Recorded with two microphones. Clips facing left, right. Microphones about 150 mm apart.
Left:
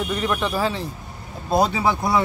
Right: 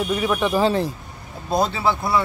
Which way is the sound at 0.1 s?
10° right (ahead or behind).